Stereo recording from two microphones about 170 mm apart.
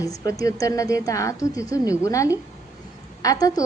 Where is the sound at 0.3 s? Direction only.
20° left (ahead or behind).